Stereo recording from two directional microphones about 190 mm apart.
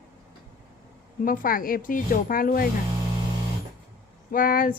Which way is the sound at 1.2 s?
45° left (ahead or behind).